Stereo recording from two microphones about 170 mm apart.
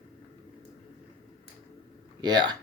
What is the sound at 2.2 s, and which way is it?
Speech, 25° right (ahead or behind).